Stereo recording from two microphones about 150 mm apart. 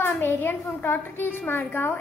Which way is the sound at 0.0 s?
15° left (ahead or behind).